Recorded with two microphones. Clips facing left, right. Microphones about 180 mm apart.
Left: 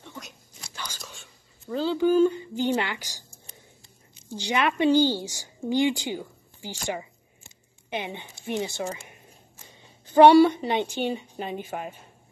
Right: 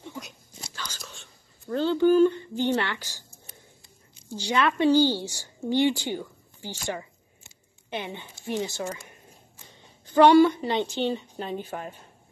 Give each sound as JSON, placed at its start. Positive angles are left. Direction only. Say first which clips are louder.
{"t": 0.7, "sound": "whispering", "louder": "left 1 dB", "side_deg": 10}
{"t": 1.1, "sound": "speech", "louder": "even", "side_deg": 0}
{"t": 4.3, "sound": "a woman's voice", "louder": "right 1 dB", "side_deg": 15}
{"t": 7.9, "sound": "speech", "louder": "left 1 dB", "side_deg": 15}
{"t": 10.0, "sound": "a woman's voice", "louder": "left 2 dB", "side_deg": 15}